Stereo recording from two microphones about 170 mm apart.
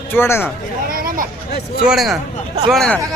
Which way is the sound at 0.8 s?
55° right (ahead or behind).